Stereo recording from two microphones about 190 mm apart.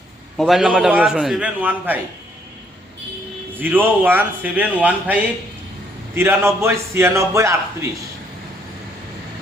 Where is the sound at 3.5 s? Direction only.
10° right (ahead or behind).